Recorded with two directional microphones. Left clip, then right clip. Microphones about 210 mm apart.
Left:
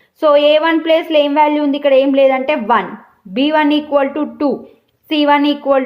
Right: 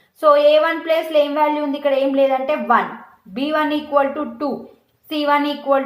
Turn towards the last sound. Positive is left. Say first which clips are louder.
# left 4 dB
turn(degrees=45)  # may be behind; listen again after turning